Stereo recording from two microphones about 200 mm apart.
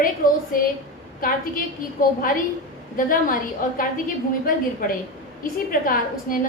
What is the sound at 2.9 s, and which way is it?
Speech, 45° left (ahead or behind).